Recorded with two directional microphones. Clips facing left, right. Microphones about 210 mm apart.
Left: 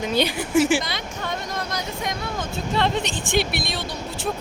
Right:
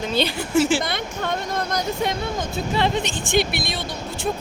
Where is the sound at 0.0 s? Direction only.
15° left (ahead or behind).